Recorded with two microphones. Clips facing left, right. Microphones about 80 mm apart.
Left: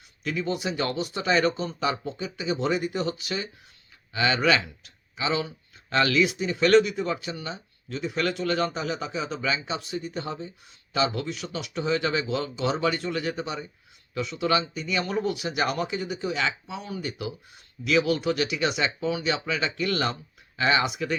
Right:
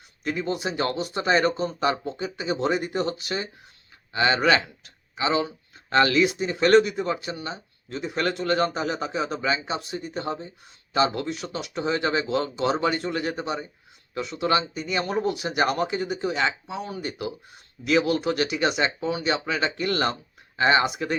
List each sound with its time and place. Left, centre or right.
0.3 s speech: right